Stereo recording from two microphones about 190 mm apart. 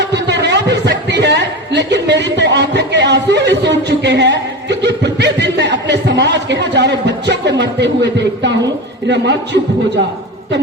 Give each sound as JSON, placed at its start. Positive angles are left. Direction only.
{"t": 0.0, "sound": "a man's voice", "side_deg": -65}